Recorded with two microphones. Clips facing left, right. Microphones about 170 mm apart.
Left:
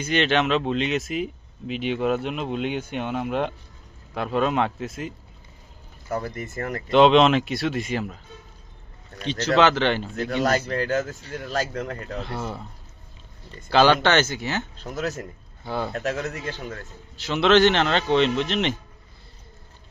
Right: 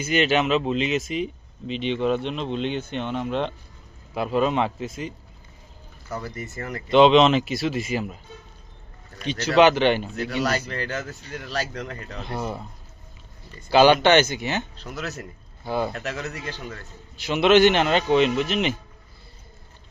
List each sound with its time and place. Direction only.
0.0 s speech: 5° right (ahead or behind)
4.1 s speech: 5° right (ahead or behind)
6.1 s speech: 50° left (ahead or behind)
6.9 s speech: centre (ahead or behind)
9.2 s a man's voice: 15° right (ahead or behind)
10.2 s speech: 50° left (ahead or behind)
12.2 s a man's voice: 15° right (ahead or behind)
13.7 s a man's voice: 15° right (ahead or behind)
14.8 s speech: 45° left (ahead or behind)
15.6 s a man's voice: 10° right (ahead or behind)
15.9 s speech: 45° left (ahead or behind)
17.2 s a man's voice: 10° right (ahead or behind)